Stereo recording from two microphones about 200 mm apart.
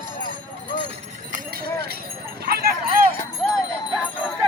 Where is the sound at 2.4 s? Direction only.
50° right (ahead or behind).